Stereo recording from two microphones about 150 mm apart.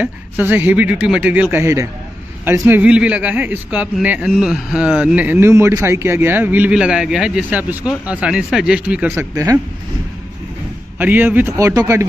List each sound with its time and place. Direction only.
0.0 s a man's voice: 15° right (ahead or behind)
11.0 s a man's voice: 10° right (ahead or behind)